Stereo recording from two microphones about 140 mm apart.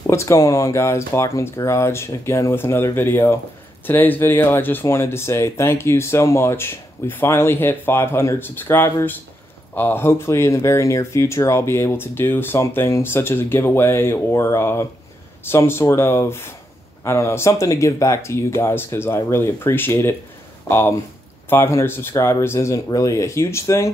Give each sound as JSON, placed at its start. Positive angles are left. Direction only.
{"t": 0.0, "sound": "speech", "side_deg": 20}